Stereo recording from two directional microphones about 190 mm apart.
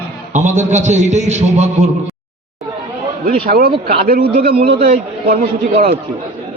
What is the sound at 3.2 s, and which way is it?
A man's voice, 50° right (ahead or behind).